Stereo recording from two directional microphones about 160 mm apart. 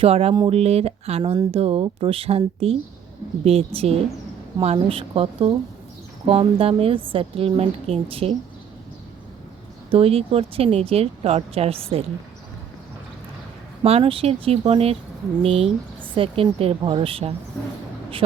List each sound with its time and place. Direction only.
0.0 s speech: 35° right (ahead or behind)
9.9 s speech: 35° right (ahead or behind)
13.8 s speech: 35° right (ahead or behind)